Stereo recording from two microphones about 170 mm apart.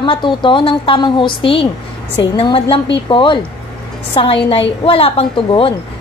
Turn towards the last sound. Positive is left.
turn(degrees=30)  # may be behind; listen again after turning